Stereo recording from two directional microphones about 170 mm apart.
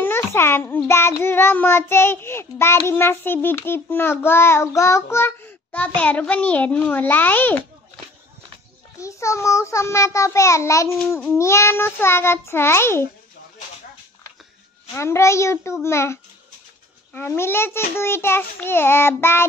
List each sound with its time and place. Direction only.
0.0 s a child's voice: 15° left (ahead or behind)
9.0 s a child's voice: 15° left (ahead or behind)
15.0 s a child's voice: 15° left (ahead or behind)